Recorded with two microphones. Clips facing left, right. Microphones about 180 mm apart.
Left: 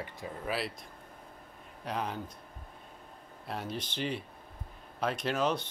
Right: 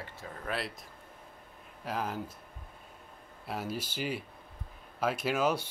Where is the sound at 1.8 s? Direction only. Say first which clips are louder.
Right 1 dB; 5° right (ahead or behind).